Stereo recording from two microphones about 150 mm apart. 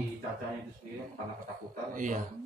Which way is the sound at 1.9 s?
60° right (ahead or behind).